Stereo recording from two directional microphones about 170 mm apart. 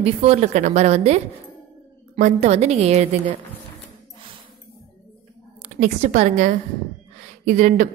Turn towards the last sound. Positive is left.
turn(degrees=-50)  # may be behind; listen again after turning